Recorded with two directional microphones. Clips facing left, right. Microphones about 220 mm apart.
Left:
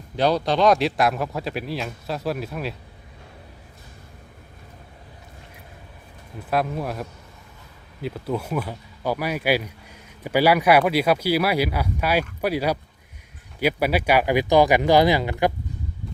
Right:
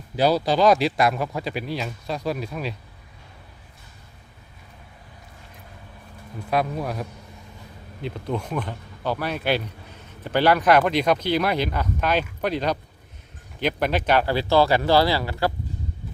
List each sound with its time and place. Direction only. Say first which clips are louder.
0.2 s speech: right 1 dB; 5° right (ahead or behind)
6.5 s speech: even; centre (ahead or behind); by 15.5 s 20° left (ahead or behind)